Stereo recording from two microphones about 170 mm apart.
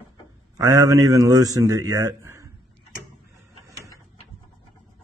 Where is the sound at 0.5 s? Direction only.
20° right (ahead or behind).